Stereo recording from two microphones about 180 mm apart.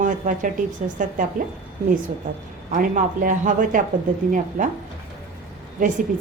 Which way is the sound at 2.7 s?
45° right (ahead or behind).